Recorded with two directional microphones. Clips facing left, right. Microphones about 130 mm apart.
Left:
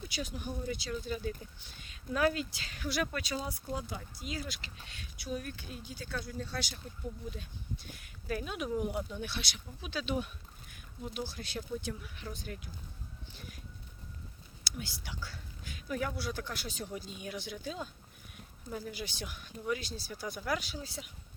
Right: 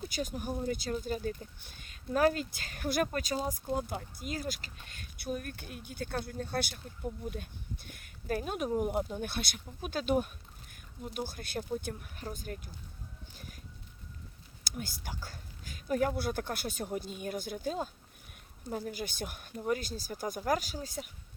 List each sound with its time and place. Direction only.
0.0 s speech: 45° right (ahead or behind)
13.3 s a sound: 45° right (ahead or behind)
14.6 s speech: 45° right (ahead or behind)